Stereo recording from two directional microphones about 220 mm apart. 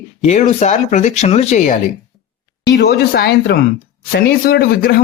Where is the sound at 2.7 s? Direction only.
45° left (ahead or behind).